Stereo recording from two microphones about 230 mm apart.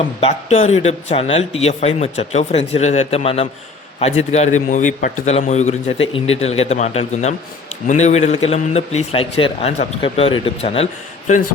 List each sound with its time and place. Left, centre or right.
0.2 s a man's voice: left